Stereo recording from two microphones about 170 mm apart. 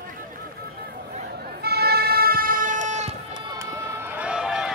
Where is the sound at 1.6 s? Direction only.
65° right (ahead or behind); by 3.1 s 45° right (ahead or behind).